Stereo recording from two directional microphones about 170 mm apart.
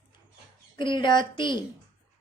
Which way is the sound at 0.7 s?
25° left (ahead or behind).